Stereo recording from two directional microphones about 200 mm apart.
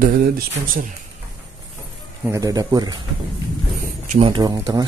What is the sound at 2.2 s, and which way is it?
Speech, 15° right (ahead or behind).